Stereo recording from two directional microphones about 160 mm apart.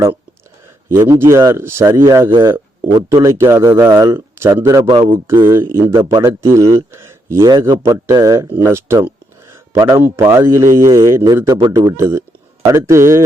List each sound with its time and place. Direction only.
0.9 s a man's voice: 15° right (ahead or behind)